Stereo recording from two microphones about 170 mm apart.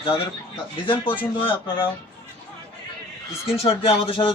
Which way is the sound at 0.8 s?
30° left (ahead or behind).